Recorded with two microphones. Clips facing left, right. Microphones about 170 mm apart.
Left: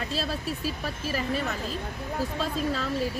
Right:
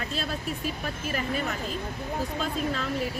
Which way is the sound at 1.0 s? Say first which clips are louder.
Left 1 dB; 35° left (ahead or behind).